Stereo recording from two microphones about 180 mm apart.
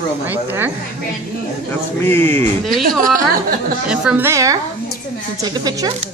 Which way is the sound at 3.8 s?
5° right (ahead or behind).